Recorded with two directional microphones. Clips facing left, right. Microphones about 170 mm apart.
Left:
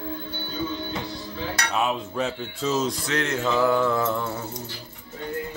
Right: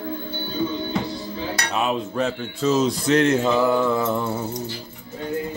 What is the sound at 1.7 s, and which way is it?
Cutlery, 5° right (ahead or behind).